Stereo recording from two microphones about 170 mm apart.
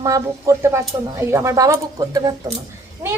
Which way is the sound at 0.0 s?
20° right (ahead or behind).